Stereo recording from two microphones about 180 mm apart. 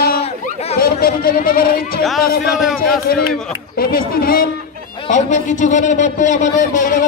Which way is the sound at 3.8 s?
55° left (ahead or behind).